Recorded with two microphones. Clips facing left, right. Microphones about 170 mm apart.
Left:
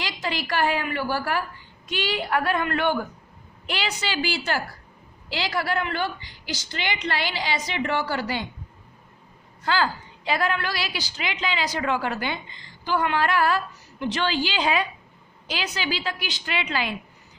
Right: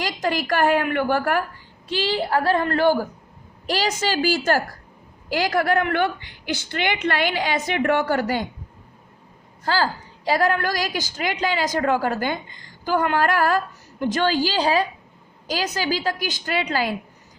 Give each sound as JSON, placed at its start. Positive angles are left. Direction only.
{"t": 0.0, "sound": "a woman's voice", "side_deg": -45}
{"t": 1.9, "sound": "a woman's voice", "side_deg": -30}
{"t": 9.6, "sound": "a woman's voice", "side_deg": -35}